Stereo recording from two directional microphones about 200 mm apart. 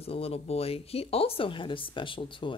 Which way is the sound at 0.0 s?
30° left (ahead or behind).